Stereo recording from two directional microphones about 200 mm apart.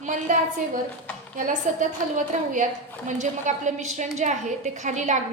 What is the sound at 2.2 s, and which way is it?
A woman's voice, 40° right (ahead or behind).